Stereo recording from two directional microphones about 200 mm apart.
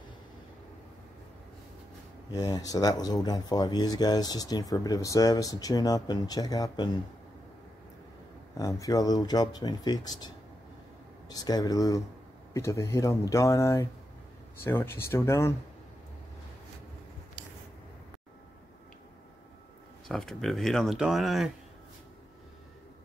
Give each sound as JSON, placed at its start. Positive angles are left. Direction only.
{"t": 2.3, "sound": "speech", "side_deg": 20}
{"t": 8.5, "sound": "speech", "side_deg": 15}
{"t": 20.1, "sound": "speech", "side_deg": 0}